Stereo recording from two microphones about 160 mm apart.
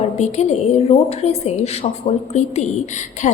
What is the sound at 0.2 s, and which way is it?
A woman's voice, 45° left (ahead or behind).